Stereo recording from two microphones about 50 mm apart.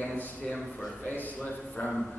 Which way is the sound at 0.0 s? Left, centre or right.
Left.